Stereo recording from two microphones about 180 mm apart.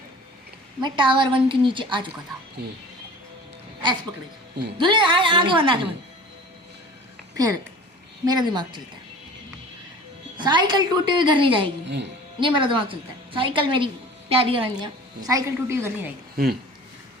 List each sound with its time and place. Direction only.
0.8 s a woman's voice: 25° right (ahead or behind)
2.6 s speech: 60° right (ahead or behind)
4.8 s a woman's voice: 25° right (ahead or behind)
7.3 s a woman's voice: 20° right (ahead or behind)
10.3 s a woman's voice: 25° right (ahead or behind)
11.9 s a woman's voice: 75° right (ahead or behind)
12.4 s a woman's voice: 25° right (ahead or behind)
16.4 s speech: 55° right (ahead or behind)